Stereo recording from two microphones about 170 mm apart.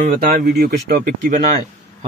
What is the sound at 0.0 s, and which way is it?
Speech, 50° right (ahead or behind).